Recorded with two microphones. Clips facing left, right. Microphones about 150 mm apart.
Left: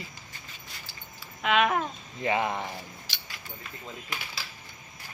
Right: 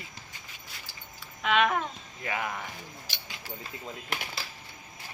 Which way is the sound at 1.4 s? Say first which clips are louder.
Left 1 dB; centre (ahead or behind).